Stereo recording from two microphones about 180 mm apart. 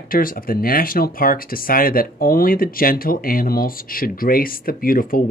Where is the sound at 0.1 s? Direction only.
50° left (ahead or behind).